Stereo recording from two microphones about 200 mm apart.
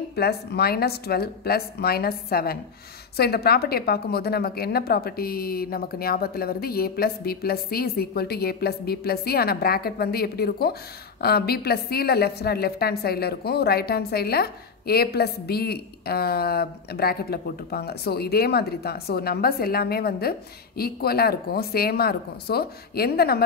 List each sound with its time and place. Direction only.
0.1 s a woman's voice: 50° left (ahead or behind)